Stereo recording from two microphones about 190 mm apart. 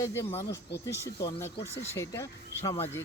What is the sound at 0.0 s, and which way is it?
Speech, 15° left (ahead or behind).